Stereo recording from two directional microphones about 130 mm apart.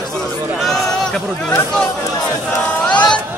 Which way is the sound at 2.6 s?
10° left (ahead or behind).